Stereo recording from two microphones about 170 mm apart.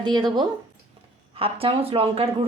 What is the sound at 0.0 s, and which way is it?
Speech, 25° right (ahead or behind).